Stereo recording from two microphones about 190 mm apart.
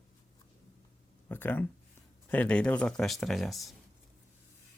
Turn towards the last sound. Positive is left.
turn(degrees=0)  # may be behind; listen again after turning